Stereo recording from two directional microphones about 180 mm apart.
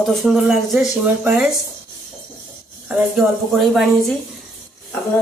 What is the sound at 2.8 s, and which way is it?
Speech, 5° right (ahead or behind).